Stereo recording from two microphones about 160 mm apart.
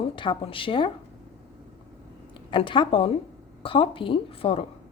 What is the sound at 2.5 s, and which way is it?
Speech, 30° left (ahead or behind).